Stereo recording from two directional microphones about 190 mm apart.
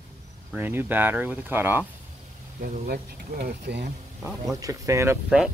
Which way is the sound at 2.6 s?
45° right (ahead or behind).